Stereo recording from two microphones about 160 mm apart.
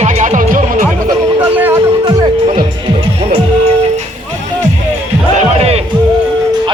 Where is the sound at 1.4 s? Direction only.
10° right (ahead or behind).